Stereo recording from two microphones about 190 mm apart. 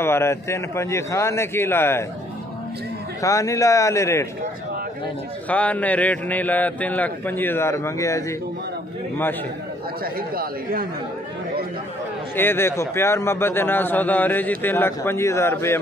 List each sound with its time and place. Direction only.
0.0 s a man's voice: 15° left (ahead or behind)
3.2 s a man's voice: 15° left (ahead or behind)
5.5 s a man's voice: 5° left (ahead or behind)
10.0 s speech: 50° right (ahead or behind)
12.4 s a man's voice: 10° left (ahead or behind)